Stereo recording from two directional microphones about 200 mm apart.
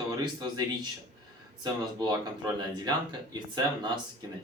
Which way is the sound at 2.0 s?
20° right (ahead or behind).